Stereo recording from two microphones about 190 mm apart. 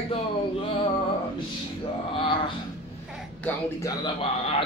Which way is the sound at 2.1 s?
25° left (ahead or behind).